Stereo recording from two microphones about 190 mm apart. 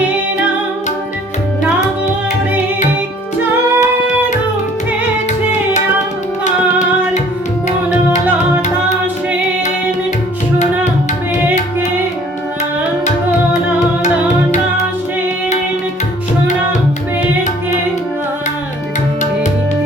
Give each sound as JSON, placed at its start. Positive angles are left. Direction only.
{"t": 3.8, "sound": "music", "side_deg": 40}
{"t": 6.4, "sound": "music", "side_deg": 40}
{"t": 13.1, "sound": "music", "side_deg": 40}